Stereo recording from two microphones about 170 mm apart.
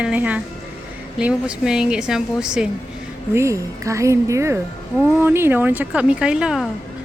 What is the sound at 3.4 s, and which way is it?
Speech, 20° right (ahead or behind).